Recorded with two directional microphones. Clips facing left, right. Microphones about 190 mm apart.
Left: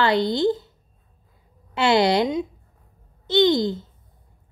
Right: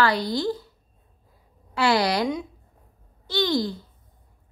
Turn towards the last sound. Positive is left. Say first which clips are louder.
# left 6 dB
turn(degrees=20)  # may be behind; listen again after turning